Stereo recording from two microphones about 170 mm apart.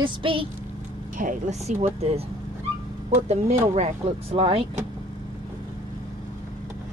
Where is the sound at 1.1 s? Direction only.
45° right (ahead or behind).